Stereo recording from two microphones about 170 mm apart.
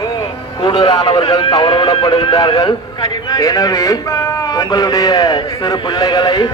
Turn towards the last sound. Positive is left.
turn(degrees=25)  # may be behind; listen again after turning